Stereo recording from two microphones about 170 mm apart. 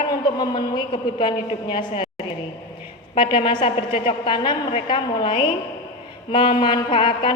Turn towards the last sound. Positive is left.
turn(degrees=30)  # may be behind; listen again after turning